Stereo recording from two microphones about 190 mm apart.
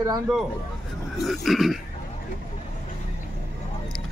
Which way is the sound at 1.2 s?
Centre (ahead or behind).